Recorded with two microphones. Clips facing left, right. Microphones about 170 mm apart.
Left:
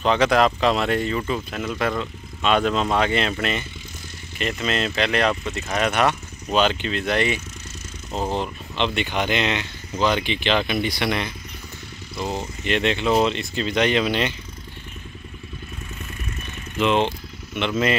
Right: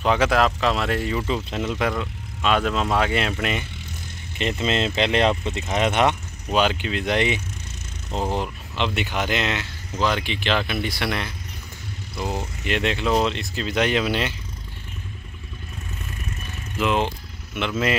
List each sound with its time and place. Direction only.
0.0 s speech: 10° right (ahead or behind)
1.2 s speech: 20° right (ahead or behind)
1.9 s speech: 5° right (ahead or behind)
4.4 s speech: 25° right (ahead or behind)
6.5 s speech: 10° right (ahead or behind)
16.7 s speech: 5° right (ahead or behind)